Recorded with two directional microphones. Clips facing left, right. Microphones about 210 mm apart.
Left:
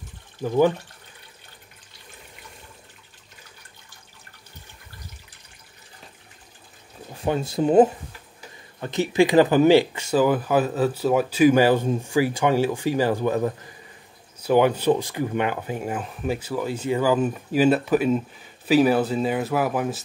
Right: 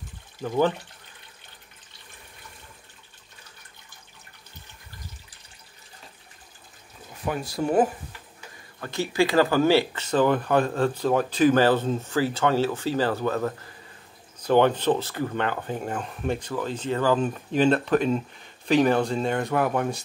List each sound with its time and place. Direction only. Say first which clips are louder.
0.4 s speech: left 4 dB; 10° left (ahead or behind)
7.2 s speech: left 5 dB; 25° left (ahead or behind); by 20.0 s 5° left (ahead or behind)